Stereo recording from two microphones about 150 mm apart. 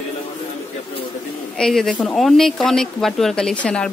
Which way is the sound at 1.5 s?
5° left (ahead or behind).